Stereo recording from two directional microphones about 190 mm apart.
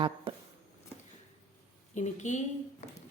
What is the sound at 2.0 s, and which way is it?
Speech, 40° left (ahead or behind).